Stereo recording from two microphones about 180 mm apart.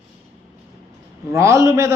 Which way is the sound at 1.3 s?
15° right (ahead or behind).